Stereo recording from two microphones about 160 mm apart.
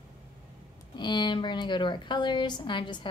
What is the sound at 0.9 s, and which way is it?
A woman's voice, 30° left (ahead or behind).